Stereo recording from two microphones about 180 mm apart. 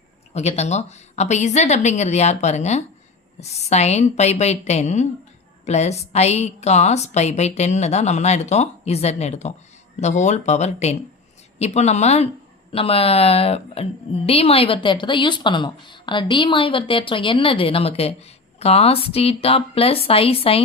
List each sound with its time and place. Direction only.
0.3 s a woman's voice: 40° left (ahead or behind)